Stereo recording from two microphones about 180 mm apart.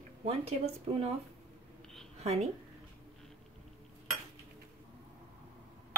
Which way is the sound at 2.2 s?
35° right (ahead or behind).